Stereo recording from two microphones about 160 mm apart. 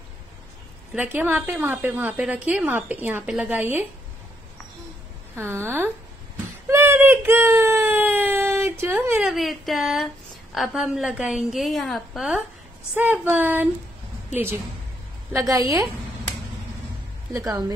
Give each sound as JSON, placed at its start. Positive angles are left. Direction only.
{"t": 0.9, "sound": "a woman's voice", "side_deg": -10}
{"t": 5.3, "sound": "a woman's voice", "side_deg": -15}
{"t": 6.7, "sound": "a sound", "side_deg": -15}
{"t": 9.2, "sound": "a woman's voice", "side_deg": 0}
{"t": 12.9, "sound": "a woman's voice", "side_deg": -10}
{"t": 17.3, "sound": "a woman's voice", "side_deg": -20}